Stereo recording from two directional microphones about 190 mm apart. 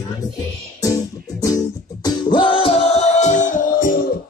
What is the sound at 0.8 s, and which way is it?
Music, 20° left (ahead or behind).